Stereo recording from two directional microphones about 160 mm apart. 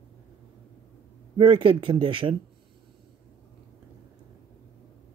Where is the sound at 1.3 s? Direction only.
35° right (ahead or behind).